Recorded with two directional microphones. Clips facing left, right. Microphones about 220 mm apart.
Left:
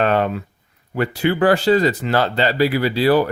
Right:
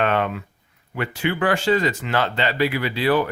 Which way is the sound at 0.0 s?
35° left (ahead or behind).